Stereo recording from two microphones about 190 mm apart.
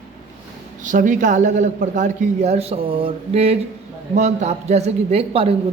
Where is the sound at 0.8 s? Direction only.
40° right (ahead or behind).